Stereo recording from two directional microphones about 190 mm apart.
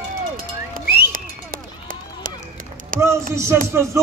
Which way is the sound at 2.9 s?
45° right (ahead or behind).